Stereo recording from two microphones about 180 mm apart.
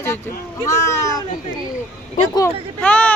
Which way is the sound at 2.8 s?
5° left (ahead or behind).